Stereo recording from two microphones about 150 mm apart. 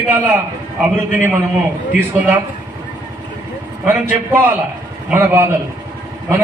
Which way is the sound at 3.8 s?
15° right (ahead or behind).